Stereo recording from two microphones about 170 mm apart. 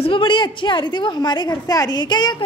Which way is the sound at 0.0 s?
30° left (ahead or behind).